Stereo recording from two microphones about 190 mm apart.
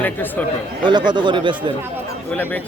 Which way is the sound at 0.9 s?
25° right (ahead or behind).